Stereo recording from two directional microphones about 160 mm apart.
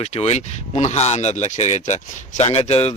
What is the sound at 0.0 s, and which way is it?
A man's voice, 40° left (ahead or behind).